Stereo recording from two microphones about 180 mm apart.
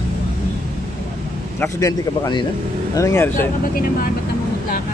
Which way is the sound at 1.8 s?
20° left (ahead or behind).